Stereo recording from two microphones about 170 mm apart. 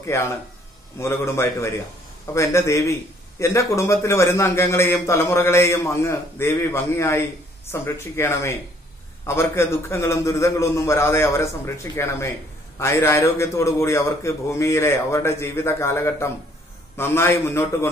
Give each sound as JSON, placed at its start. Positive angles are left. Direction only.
{"t": 0.0, "sound": "a man's voice", "side_deg": 15}